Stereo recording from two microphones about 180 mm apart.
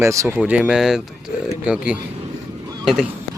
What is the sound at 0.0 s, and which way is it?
Speech, 15° right (ahead or behind).